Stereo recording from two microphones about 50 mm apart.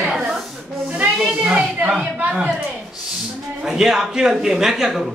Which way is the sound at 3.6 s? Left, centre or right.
Centre.